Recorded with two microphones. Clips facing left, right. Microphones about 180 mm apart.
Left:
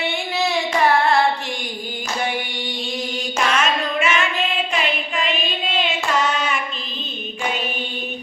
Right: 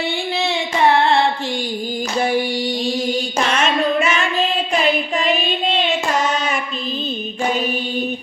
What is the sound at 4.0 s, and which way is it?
Child singing, 35° right (ahead or behind).